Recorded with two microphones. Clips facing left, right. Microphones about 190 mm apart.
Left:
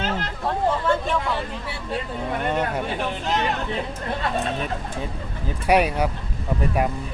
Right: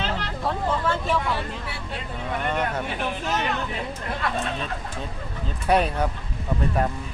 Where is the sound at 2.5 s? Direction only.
20° left (ahead or behind).